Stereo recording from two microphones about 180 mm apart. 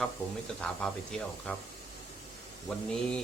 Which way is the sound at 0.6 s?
5° left (ahead or behind).